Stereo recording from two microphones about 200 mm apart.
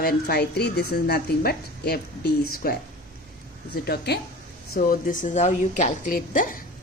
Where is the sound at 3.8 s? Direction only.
55° left (ahead or behind).